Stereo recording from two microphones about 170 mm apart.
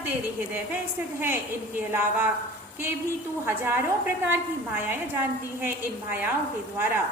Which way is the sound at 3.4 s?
15° right (ahead or behind).